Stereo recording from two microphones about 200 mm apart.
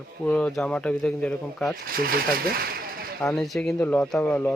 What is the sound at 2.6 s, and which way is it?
Speech, 50° right (ahead or behind).